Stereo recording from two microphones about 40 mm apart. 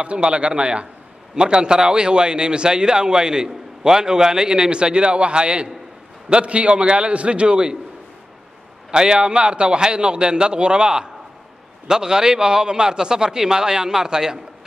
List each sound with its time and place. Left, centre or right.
0.0 s a man's voice: right
8.9 s a man's voice: right